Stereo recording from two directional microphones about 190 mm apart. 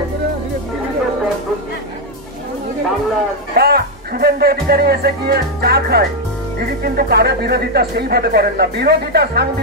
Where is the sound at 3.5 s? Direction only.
55° right (ahead or behind).